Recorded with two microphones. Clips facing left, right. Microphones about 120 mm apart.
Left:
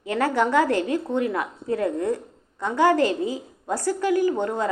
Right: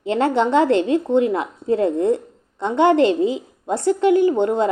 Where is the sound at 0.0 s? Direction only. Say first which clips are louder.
Right 4 dB; 25° right (ahead or behind).